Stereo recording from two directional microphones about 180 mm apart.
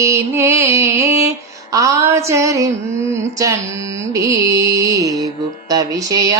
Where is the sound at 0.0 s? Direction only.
15° right (ahead or behind).